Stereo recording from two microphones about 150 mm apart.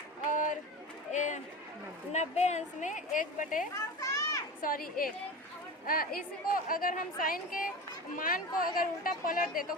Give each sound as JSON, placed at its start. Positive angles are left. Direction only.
{"t": 0.3, "sound": "a sound", "side_deg": 60}
{"t": 1.1, "sound": "run", "side_deg": 55}
{"t": 2.1, "sound": "a woman's voice", "side_deg": 50}
{"t": 4.0, "sound": "children playing", "side_deg": 25}
{"t": 4.6, "sound": "a woman's voice", "side_deg": 70}